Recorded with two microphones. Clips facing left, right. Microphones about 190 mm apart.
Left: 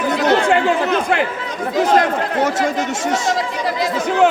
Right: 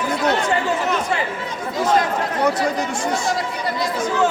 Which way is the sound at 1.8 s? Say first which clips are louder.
Left 3 dB; 80° left.